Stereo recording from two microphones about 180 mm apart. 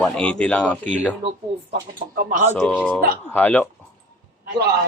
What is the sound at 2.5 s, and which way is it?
A man's voice, 5° left (ahead or behind).